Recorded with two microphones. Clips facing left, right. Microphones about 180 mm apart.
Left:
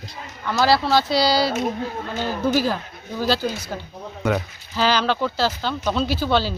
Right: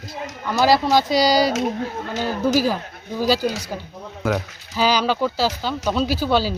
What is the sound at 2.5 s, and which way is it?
Speech, 10° right (ahead or behind).